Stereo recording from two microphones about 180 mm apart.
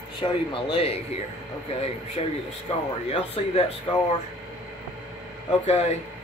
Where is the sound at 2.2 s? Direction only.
30° left (ahead or behind).